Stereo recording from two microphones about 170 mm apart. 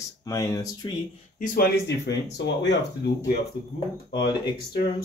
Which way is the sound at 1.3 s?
55° left (ahead or behind).